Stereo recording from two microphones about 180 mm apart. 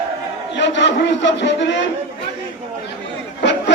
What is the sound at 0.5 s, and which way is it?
A man's voice, 85° left.